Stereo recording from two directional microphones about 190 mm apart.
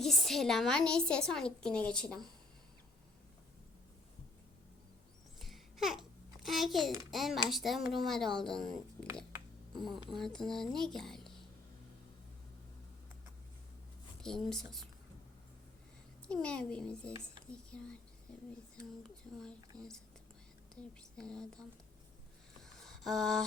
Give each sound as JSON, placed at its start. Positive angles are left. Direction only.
{"t": 0.0, "sound": "a woman's voice", "side_deg": 0}
{"t": 5.4, "sound": "babbling", "side_deg": 0}
{"t": 7.1, "sound": "a woman's voice", "side_deg": 0}
{"t": 14.2, "sound": "a woman's voice", "side_deg": 5}
{"t": 16.3, "sound": "a woman's voice", "side_deg": 5}
{"t": 19.7, "sound": "speech", "side_deg": -20}
{"t": 21.2, "sound": "a woman's voice", "side_deg": 5}
{"t": 22.6, "sound": "a sound", "side_deg": 0}